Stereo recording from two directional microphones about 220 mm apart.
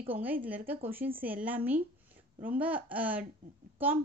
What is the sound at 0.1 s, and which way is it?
Music, 5° right (ahead or behind).